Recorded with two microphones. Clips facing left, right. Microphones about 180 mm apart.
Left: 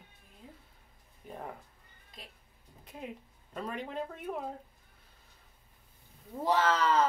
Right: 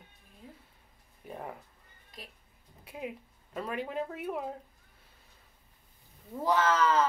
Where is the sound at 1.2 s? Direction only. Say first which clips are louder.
Right 1 dB; 5° right (ahead or behind).